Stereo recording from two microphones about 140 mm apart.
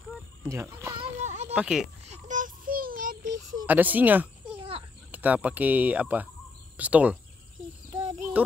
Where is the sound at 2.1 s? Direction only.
70° right (ahead or behind); by 3.1 s 90° right.